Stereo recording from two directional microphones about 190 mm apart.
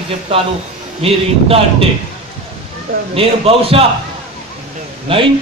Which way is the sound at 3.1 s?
30° right (ahead or behind).